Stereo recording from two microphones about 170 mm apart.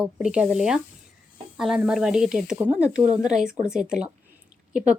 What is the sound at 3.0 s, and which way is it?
Speech, 45° right (ahead or behind).